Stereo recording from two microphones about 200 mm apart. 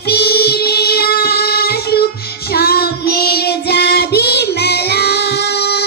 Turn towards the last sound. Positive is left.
turn(degrees=55)  # may be behind; listen again after turning